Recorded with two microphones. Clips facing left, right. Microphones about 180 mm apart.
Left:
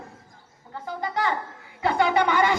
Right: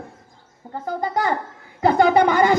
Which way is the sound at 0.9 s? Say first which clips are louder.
Right 5 dB; 45° right (ahead or behind).